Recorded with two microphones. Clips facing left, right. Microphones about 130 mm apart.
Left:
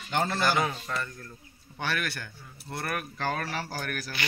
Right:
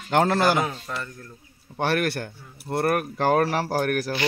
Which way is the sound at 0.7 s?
5° right (ahead or behind).